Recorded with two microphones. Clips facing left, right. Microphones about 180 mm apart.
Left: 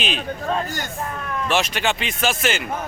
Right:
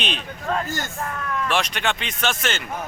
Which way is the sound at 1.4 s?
5° left (ahead or behind).